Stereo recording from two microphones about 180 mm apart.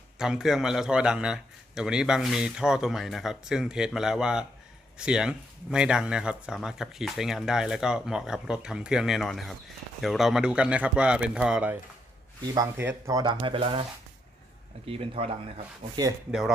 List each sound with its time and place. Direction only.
0.2 s a man's voice: centre (ahead or behind); by 13.8 s 30° right (ahead or behind)
14.8 s speech: 35° right (ahead or behind)
16.0 s speech: 20° right (ahead or behind)